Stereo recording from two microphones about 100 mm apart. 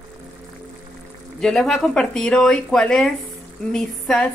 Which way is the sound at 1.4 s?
5° left (ahead or behind).